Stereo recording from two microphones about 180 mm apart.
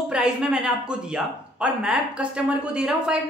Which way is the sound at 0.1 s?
5° right (ahead or behind).